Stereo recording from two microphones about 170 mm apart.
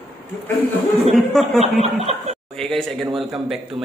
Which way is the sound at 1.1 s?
Centre (ahead or behind).